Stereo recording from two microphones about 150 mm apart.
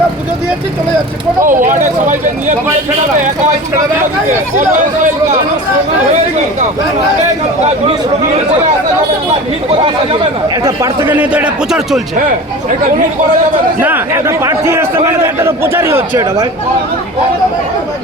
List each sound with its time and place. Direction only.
1.5 s speech: 60° right (ahead or behind)
9.6 s speech: 35° right (ahead or behind)
10.5 s a man's voice: 20° right (ahead or behind); by 12.0 s 5° right (ahead or behind)
13.8 s a man's voice: 15° right (ahead or behind)